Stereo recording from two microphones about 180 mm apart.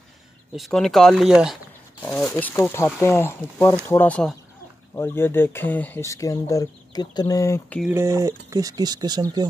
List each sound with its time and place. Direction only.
0.6 s speech: centre (ahead or behind)
7.9 s speech: 15° right (ahead or behind)